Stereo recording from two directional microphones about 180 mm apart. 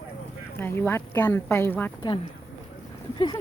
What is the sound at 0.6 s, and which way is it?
Speech, 10° left (ahead or behind).